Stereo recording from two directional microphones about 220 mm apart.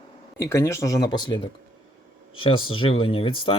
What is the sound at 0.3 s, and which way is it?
Speech, 10° left (ahead or behind).